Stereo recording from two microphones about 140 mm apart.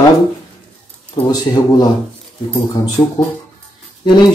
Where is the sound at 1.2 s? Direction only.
25° left (ahead or behind).